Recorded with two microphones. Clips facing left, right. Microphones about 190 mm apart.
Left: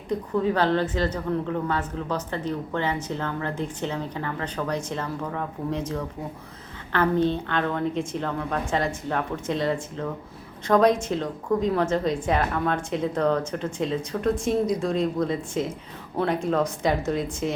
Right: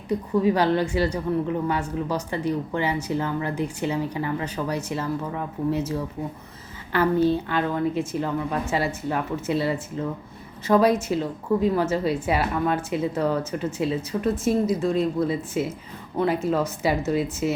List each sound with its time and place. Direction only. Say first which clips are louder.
0.1 s a woman's voice: right 3 dB; 10° right (ahead or behind)